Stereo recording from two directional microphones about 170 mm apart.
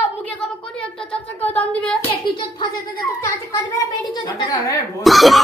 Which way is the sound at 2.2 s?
25° left (ahead or behind).